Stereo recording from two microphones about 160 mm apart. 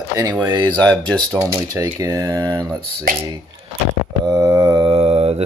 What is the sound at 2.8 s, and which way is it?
Speech, 75° right (ahead or behind).